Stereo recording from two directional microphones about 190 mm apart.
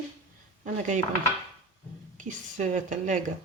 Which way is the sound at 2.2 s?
40° right (ahead or behind).